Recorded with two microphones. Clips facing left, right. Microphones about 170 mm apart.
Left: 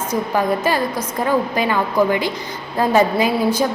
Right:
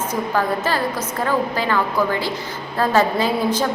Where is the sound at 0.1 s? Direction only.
15° left (ahead or behind).